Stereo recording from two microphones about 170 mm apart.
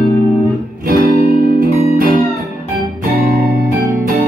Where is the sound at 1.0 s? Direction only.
60° right (ahead or behind).